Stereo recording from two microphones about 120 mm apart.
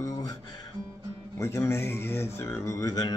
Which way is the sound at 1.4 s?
25° left (ahead or behind).